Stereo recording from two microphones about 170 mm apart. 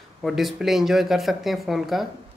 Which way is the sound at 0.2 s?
Centre (ahead or behind).